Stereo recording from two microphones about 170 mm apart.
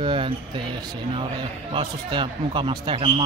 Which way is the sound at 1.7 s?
30° right (ahead or behind).